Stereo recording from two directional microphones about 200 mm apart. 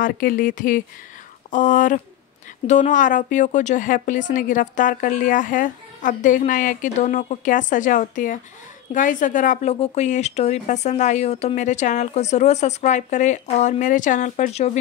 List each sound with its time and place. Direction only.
0.0 s a woman's voice: 45° left (ahead or behind)